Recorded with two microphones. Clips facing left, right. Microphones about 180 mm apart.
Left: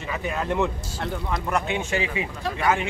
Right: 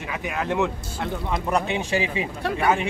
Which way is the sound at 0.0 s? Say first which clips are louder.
Even; 10° right (ahead or behind).